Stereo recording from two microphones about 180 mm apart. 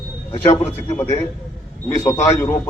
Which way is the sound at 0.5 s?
15° left (ahead or behind).